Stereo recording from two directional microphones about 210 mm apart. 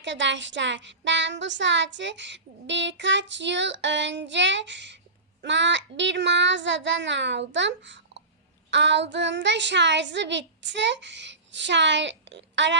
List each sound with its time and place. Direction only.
0.0 s child singing: 60° right (ahead or behind)